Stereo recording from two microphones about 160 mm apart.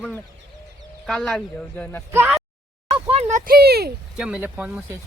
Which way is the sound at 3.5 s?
75° right (ahead or behind).